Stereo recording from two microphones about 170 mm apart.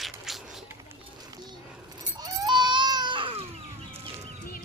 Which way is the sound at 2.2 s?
25° right (ahead or behind).